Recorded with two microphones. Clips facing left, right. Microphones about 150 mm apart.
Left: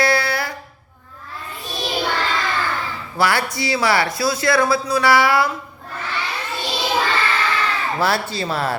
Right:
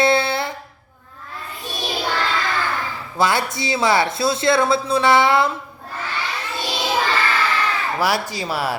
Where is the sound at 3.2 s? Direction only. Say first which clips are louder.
Even; 20° right (ahead or behind).